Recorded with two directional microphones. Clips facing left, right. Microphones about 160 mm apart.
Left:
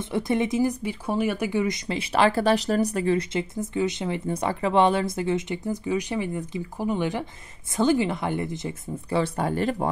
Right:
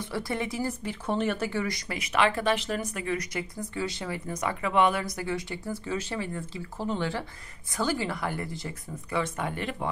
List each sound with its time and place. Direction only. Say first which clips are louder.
0.0 s speech: left 7 dB; 20° left (ahead or behind)
9.1 s speech: left 6 dB; 35° left (ahead or behind)